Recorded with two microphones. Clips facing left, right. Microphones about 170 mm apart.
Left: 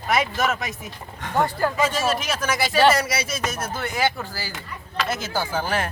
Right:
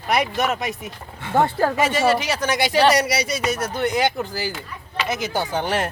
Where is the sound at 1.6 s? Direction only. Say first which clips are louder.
Right 2 dB; 70° right (ahead or behind).